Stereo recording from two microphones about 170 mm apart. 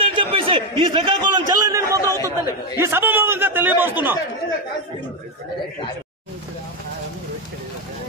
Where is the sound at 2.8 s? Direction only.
15° right (ahead or behind).